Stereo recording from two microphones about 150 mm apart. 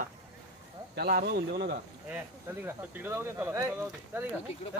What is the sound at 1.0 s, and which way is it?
Speech, 90° right.